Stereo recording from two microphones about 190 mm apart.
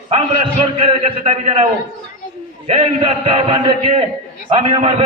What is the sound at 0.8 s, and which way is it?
A man's voice, 30° right (ahead or behind).